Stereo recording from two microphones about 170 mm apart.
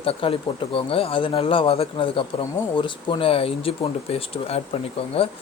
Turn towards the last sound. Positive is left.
turn(degrees=35)  # may be behind; listen again after turning